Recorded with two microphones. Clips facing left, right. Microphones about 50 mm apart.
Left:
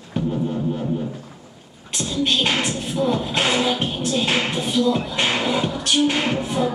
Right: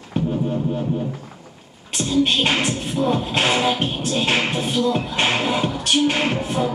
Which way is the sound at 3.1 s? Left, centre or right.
Right.